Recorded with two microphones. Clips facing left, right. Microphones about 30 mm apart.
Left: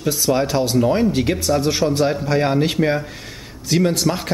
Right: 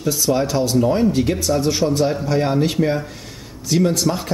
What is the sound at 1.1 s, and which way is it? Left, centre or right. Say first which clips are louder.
Speech: even; left.